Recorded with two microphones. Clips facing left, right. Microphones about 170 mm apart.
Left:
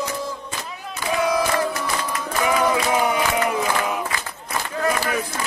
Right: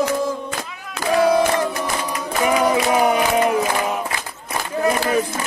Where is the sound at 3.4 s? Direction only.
15° right (ahead or behind).